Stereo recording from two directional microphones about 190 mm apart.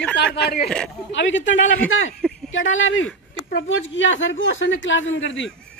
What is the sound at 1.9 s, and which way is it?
A woman's voice, 90° left.